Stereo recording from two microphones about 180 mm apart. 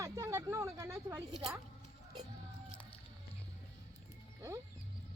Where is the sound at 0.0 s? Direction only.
15° right (ahead or behind).